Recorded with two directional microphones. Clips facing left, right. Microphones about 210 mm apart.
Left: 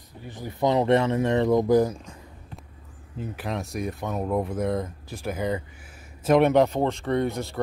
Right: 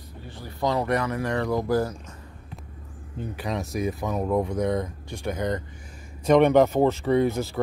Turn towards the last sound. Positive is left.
turn(degrees=0)  # may be behind; listen again after turning